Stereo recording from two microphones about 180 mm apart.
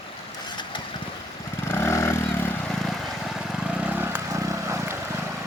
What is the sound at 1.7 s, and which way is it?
Vehicle, 15° left (ahead or behind).